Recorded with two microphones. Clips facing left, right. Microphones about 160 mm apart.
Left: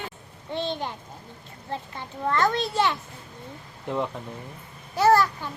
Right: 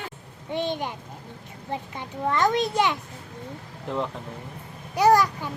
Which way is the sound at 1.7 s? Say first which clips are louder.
Right 2 dB; 15° right (ahead or behind).